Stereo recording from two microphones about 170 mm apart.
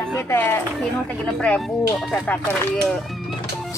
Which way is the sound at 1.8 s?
10° left (ahead or behind).